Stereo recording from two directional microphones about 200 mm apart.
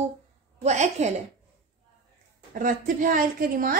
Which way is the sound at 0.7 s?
35° right (ahead or behind).